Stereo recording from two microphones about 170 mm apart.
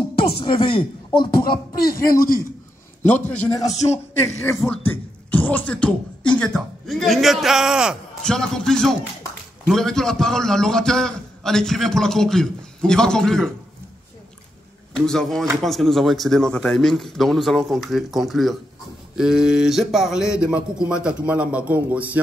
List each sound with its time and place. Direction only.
0.4 s a man's voice: 30° left (ahead or behind)
2.0 s a man's voice: 55° left (ahead or behind)
3.1 s a man's voice: 10° left (ahead or behind)
3.7 s a man's voice: 40° left (ahead or behind)
4.8 s a man's voice: 10° left (ahead or behind)
15.0 s a man's voice: 5° left (ahead or behind)